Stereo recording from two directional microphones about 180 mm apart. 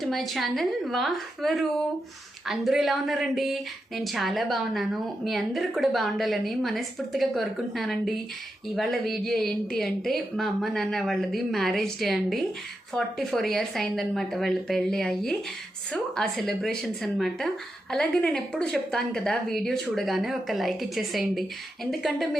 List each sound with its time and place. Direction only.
0.0 s a woman's voice: centre (ahead or behind)